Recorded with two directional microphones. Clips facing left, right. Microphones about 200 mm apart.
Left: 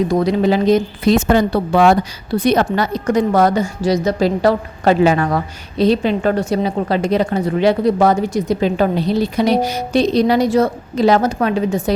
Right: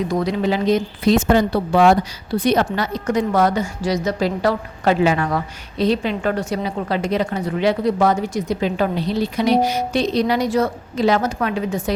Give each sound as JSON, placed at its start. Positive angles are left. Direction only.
{"t": 0.1, "sound": "a woman's voice", "side_deg": 35}
{"t": 1.3, "sound": "speech", "side_deg": 60}
{"t": 2.4, "sound": "a woman's voice", "side_deg": 50}